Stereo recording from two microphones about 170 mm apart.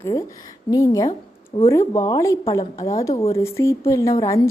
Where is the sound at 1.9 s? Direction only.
20° left (ahead or behind).